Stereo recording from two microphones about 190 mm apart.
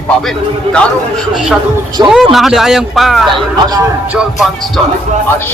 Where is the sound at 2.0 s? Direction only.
25° right (ahead or behind).